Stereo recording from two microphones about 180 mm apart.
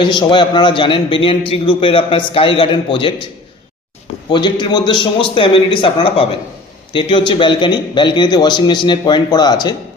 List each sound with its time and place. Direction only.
0.0 s a man's voice: 25° left (ahead or behind)
4.3 s a man's voice: 25° left (ahead or behind)